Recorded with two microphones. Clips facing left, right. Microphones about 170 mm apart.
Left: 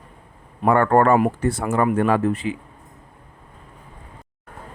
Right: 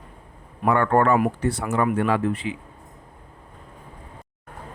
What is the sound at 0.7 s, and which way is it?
A man's voice, 45° left (ahead or behind).